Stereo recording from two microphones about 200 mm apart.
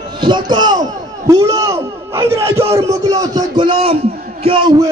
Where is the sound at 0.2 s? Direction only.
25° right (ahead or behind).